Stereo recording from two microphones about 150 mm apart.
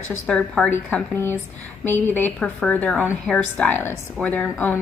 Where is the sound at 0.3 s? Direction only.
5° left (ahead or behind).